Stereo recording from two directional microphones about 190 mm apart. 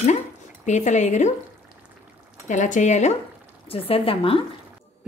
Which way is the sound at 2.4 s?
40° left (ahead or behind).